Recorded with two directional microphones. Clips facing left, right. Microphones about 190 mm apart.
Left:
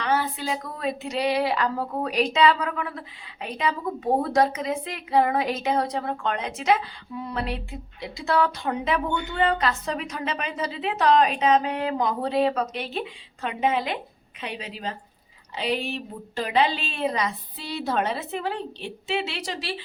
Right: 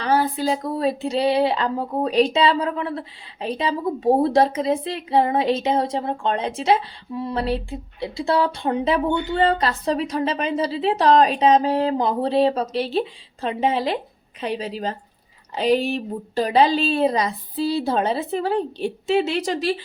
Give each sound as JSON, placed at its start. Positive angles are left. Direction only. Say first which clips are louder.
{"t": 0.0, "sound": "a woman's voice", "louder": "right 5 dB", "side_deg": -35}